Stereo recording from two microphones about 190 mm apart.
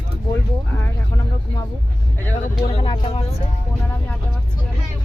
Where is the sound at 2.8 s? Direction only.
30° left (ahead or behind).